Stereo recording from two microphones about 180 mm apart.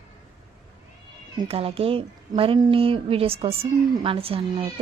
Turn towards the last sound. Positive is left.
turn(degrees=-30)  # may be behind; listen again after turning